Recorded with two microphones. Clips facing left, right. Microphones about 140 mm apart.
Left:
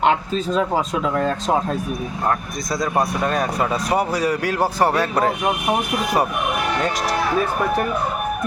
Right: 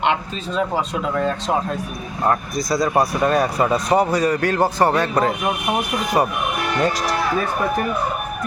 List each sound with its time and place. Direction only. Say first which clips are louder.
0.0 s speech: left 3 dB; 40° left (ahead or behind)
2.7 s speech: right 2 dB; centre (ahead or behind)